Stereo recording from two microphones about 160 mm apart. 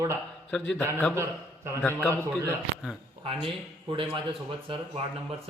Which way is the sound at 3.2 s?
30° right (ahead or behind).